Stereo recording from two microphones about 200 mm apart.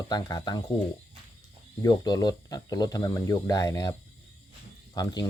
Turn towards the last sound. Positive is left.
turn(degrees=20)  # may be behind; listen again after turning